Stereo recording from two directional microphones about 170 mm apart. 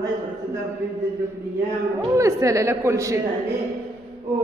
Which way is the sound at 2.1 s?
20° right (ahead or behind).